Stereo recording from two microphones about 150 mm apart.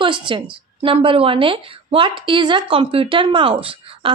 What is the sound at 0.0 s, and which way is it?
A woman's voice, 35° right (ahead or behind).